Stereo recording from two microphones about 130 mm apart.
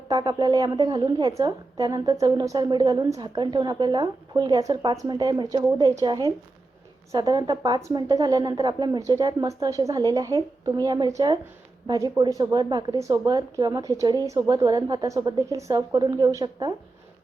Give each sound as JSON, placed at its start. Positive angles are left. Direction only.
{"t": 0.1, "sound": "a woman's voice", "side_deg": -35}